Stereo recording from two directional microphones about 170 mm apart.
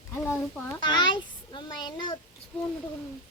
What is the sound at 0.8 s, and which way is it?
A child's voice, 25° left (ahead or behind).